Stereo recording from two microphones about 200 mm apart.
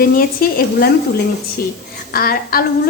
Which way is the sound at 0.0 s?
45° left (ahead or behind).